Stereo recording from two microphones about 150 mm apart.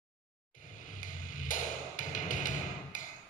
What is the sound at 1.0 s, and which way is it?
Music, 60° left (ahead or behind).